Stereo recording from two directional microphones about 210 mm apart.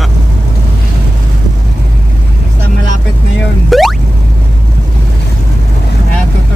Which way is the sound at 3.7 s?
Centre (ahead or behind).